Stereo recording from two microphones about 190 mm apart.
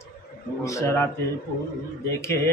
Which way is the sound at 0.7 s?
15° left (ahead or behind).